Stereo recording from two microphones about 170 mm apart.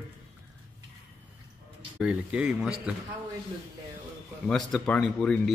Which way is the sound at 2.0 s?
5° right (ahead or behind).